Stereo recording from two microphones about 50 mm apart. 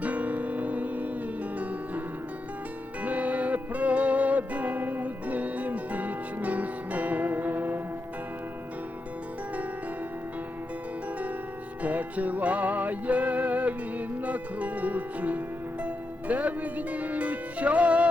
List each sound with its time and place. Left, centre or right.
0.0 s music: right
3.0 s music: right
11.8 s music: right